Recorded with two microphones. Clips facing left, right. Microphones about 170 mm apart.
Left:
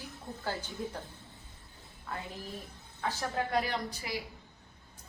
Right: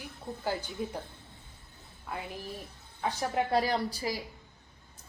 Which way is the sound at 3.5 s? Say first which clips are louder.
Right 4 dB; 35° right (ahead or behind).